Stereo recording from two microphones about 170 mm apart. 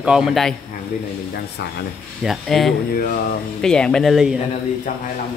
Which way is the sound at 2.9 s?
60° left (ahead or behind).